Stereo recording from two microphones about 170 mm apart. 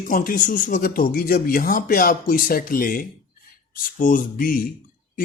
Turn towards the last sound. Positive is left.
turn(degrees=55)  # may be behind; listen again after turning